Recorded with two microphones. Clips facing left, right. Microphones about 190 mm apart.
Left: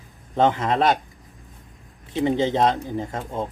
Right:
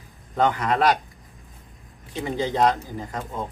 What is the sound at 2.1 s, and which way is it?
A man's voice, 25° left (ahead or behind).